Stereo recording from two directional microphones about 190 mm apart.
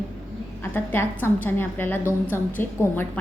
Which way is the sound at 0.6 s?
10° left (ahead or behind).